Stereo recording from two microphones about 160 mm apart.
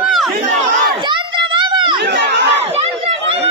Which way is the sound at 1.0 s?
30° right (ahead or behind).